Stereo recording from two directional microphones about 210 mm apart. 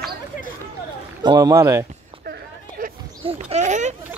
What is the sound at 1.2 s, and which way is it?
Speech, 15° right (ahead or behind).